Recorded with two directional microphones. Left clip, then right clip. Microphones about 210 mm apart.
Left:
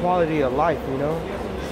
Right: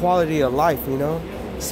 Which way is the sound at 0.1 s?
50° right (ahead or behind).